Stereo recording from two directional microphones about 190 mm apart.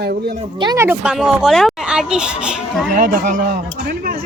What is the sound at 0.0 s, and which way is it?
Speech, 55° right (ahead or behind).